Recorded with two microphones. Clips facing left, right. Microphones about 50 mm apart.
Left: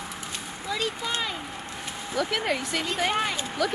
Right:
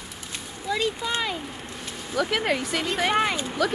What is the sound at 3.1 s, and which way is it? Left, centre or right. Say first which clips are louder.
Speech: right 4 dB; centre.